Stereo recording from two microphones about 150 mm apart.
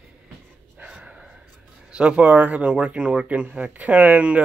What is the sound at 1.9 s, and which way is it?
Speech, 5° right (ahead or behind).